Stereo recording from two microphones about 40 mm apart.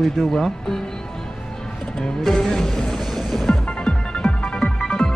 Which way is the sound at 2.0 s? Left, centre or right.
Centre.